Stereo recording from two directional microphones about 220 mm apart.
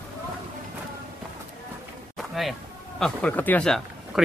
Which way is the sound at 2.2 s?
Centre (ahead or behind).